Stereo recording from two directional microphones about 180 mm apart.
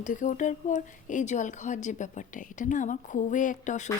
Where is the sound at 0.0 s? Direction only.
45° left (ahead or behind).